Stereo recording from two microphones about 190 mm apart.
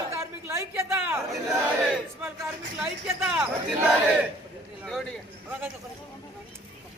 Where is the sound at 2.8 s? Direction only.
5° right (ahead or behind).